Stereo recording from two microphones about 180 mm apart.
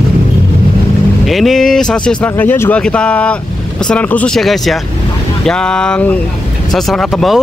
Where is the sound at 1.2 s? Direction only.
Centre (ahead or behind).